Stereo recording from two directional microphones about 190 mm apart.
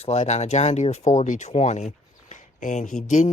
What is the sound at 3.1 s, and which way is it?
Speech, 40° left (ahead or behind).